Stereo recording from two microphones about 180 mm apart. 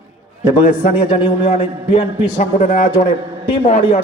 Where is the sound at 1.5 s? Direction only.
35° left (ahead or behind).